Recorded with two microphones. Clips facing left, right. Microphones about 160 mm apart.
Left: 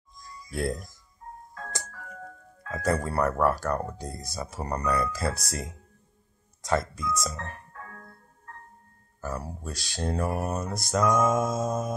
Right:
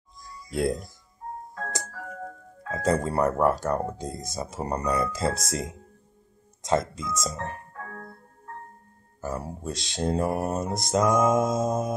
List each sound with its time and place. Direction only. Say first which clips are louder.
0.5 s speech: right 4 dB; 20° right (ahead or behind)
2.7 s speech: right 3 dB; 20° right (ahead or behind)
7.8 s organ: right 6 dB; 45° right (ahead or behind)
9.2 s speech: right 3 dB; 20° right (ahead or behind)